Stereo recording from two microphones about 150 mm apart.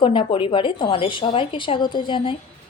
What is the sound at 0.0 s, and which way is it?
A woman's voice, 35° left (ahead or behind).